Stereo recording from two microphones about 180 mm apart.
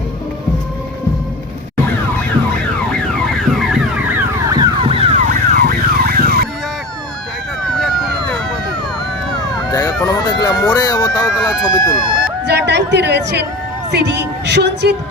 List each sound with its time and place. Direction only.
3.3 s car alarm: centre (ahead or behind)
4.4 s car alarm: 20° right (ahead or behind); by 6.5 s 55° right (ahead or behind)
9.7 s emergency vehicle: 20° left (ahead or behind)
12.5 s a woman's voice: 70° right (ahead or behind)